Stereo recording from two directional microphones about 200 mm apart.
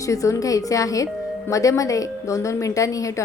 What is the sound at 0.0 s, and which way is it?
A woman's voice, 15° left (ahead or behind).